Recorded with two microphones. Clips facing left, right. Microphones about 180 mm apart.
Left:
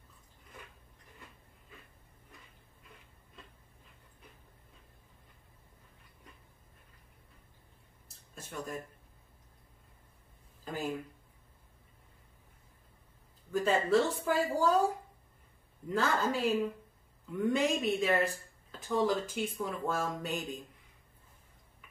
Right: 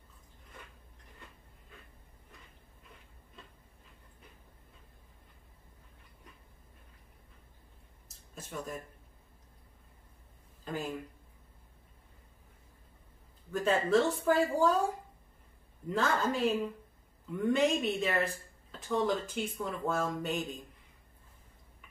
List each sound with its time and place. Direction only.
8.4 s a sound: centre (ahead or behind)
10.6 s speech: centre (ahead or behind)
13.5 s speech: centre (ahead or behind)
15.9 s speech: centre (ahead or behind)